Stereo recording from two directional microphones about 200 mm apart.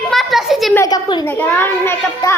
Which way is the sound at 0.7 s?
15° left (ahead or behind).